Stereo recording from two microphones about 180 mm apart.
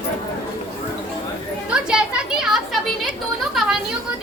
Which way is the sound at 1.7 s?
5° right (ahead or behind).